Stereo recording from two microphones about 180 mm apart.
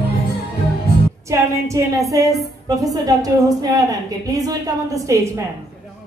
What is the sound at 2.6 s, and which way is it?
A woman's voice, 20° right (ahead or behind).